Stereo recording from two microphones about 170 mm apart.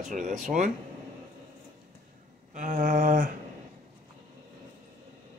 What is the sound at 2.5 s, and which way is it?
Speech, 50° right (ahead or behind).